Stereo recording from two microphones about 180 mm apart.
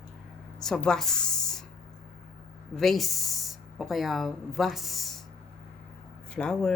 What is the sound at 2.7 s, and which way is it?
Speech, centre (ahead or behind).